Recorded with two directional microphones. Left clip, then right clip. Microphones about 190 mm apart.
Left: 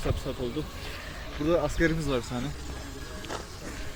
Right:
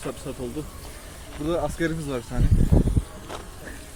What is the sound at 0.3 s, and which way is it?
Speech, 30° right (ahead or behind).